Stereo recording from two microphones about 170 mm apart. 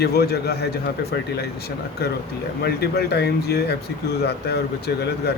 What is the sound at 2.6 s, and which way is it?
Speech, 70° left (ahead or behind).